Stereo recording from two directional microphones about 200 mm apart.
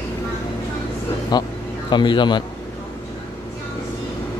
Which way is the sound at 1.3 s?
20° left (ahead or behind).